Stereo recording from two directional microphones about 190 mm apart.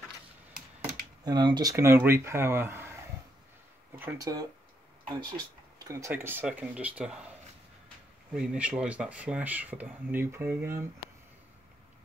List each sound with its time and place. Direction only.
1.2 s speech: 20° right (ahead or behind)
4.0 s speech: 20° right (ahead or behind)
8.3 s speech: 5° right (ahead or behind)